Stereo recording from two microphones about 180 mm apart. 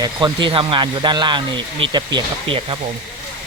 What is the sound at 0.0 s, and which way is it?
Speech, 25° right (ahead or behind).